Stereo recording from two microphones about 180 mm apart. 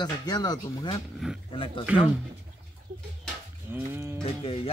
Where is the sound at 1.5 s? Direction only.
30° left (ahead or behind).